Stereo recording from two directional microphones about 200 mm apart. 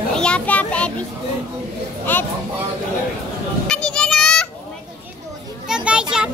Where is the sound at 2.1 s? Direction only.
10° left (ahead or behind).